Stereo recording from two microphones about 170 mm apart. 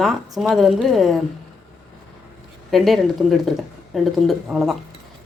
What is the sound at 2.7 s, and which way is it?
A woman's voice, centre (ahead or behind).